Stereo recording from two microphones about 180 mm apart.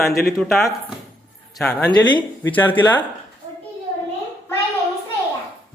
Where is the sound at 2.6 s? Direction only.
10° left (ahead or behind).